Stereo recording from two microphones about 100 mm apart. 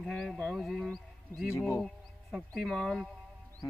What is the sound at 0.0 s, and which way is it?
Speech, 5° left (ahead or behind).